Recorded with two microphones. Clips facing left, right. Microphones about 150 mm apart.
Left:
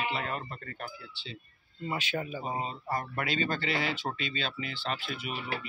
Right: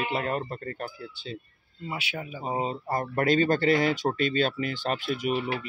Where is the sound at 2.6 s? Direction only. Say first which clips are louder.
Right 5 dB; 40° right (ahead or behind).